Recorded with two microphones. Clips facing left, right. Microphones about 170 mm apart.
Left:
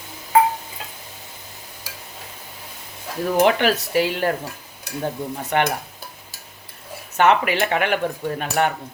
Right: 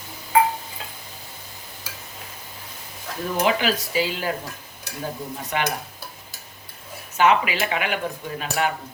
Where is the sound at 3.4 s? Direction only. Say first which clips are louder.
Left 2 dB; 60° left (ahead or behind).